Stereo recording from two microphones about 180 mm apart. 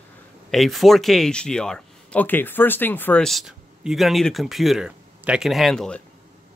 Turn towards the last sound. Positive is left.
turn(degrees=5)  # may be behind; listen again after turning